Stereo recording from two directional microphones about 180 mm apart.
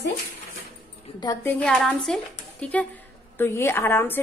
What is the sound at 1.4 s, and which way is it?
A woman's voice, 5° left (ahead or behind).